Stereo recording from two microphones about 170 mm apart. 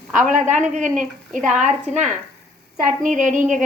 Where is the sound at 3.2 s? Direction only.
50° right (ahead or behind).